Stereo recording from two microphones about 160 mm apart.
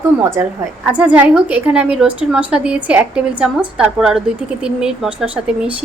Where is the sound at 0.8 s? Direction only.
10° right (ahead or behind).